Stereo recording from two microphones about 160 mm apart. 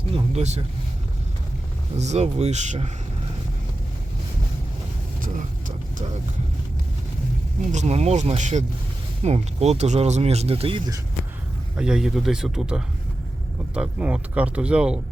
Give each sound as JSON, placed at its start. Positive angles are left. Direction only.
{"t": 0.1, "sound": "speech", "side_deg": -40}
{"t": 2.0, "sound": "speech", "side_deg": -45}
{"t": 5.2, "sound": "vehicle", "side_deg": -55}
{"t": 7.7, "sound": "speech", "side_deg": -45}
{"t": 11.8, "sound": "speech", "side_deg": -5}